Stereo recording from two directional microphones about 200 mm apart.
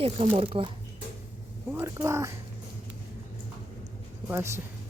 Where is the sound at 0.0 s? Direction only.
30° right (ahead or behind).